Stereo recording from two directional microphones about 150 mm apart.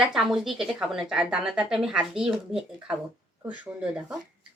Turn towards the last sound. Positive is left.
turn(degrees=-10)  # may be behind; listen again after turning